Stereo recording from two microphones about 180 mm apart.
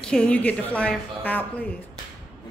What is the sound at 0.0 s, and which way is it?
A woman's voice, 5° left (ahead or behind).